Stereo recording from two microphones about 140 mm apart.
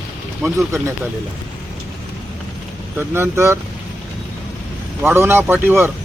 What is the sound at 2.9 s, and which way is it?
Speech, 15° right (ahead or behind).